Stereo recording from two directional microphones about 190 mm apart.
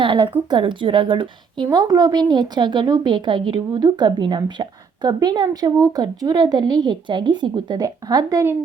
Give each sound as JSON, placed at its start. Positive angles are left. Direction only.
{"t": 0.0, "sound": "a woman's voice", "side_deg": -25}